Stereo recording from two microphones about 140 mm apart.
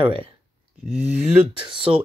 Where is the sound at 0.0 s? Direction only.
40° right (ahead or behind).